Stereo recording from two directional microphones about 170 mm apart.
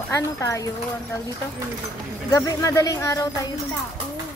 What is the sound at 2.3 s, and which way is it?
A woman's voice, 20° left (ahead or behind).